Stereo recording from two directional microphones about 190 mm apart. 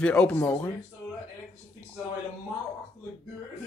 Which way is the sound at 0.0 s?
5° left (ahead or behind).